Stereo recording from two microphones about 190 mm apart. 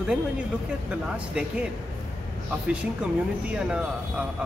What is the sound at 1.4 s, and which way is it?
Speech, 5° right (ahead or behind).